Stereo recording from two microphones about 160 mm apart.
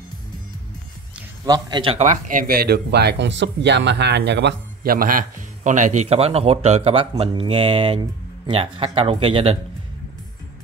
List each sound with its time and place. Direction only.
1.4 s a man's voice: 25° right (ahead or behind)
2.0 s speech: 50° right (ahead or behind); by 9.6 s 35° right (ahead or behind)